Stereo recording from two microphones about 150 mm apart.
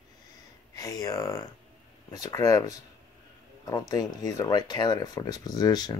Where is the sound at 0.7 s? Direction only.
25° left (ahead or behind).